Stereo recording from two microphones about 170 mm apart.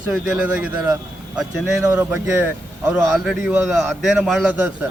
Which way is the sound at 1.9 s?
15° right (ahead or behind).